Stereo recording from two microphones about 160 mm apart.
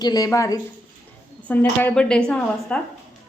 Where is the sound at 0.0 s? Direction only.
25° left (ahead or behind).